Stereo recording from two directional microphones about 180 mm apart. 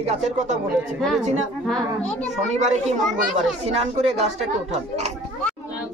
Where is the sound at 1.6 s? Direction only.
5° left (ahead or behind).